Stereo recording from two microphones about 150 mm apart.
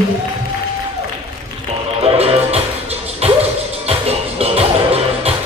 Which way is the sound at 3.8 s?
40° right (ahead or behind).